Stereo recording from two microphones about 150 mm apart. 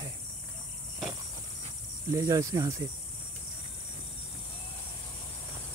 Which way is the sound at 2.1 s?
20° right (ahead or behind).